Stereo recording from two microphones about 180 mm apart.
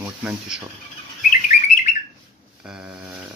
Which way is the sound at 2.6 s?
5° right (ahead or behind).